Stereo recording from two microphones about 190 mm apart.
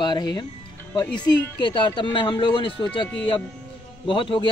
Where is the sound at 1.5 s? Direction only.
25° left (ahead or behind).